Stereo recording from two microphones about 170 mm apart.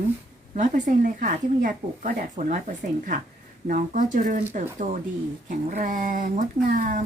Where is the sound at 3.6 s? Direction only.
50° right (ahead or behind).